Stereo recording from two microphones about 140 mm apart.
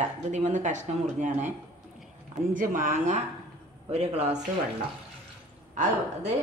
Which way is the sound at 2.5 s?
65° right (ahead or behind).